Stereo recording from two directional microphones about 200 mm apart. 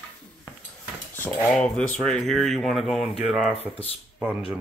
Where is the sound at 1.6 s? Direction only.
5° left (ahead or behind).